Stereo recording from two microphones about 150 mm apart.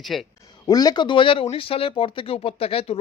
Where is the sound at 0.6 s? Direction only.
25° left (ahead or behind).